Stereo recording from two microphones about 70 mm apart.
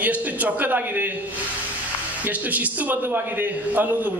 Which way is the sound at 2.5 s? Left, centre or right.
Right.